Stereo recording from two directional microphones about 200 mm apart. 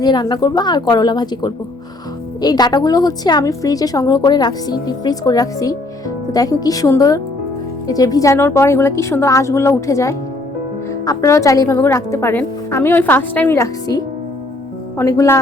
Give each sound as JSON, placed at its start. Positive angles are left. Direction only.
{"t": 0.0, "sound": "a woman's voice", "side_deg": 20}